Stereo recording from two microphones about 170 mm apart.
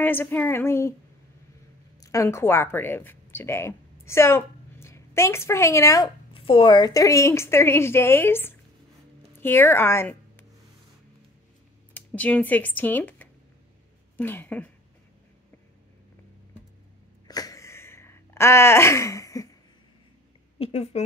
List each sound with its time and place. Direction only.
0.0 s a woman's voice: 10° left (ahead or behind)
2.0 s a woman's voice: 20° left (ahead or behind)
6.3 s a woman's voice: 30° left (ahead or behind); by 10.4 s 15° left (ahead or behind)
11.9 s a woman's voice: 10° left (ahead or behind)
17.3 s a sound: 20° left (ahead or behind)
20.5 s a woman's voice: 35° left (ahead or behind)